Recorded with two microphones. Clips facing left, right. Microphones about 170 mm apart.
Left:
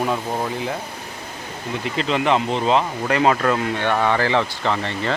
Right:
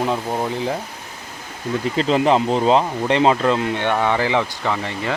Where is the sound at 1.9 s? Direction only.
35° right (ahead or behind).